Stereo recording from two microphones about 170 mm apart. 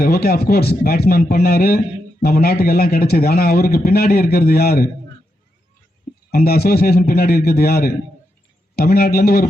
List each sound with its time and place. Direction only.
0.0 s a man's voice: 60° left (ahead or behind)
6.3 s a man's voice: 65° left (ahead or behind)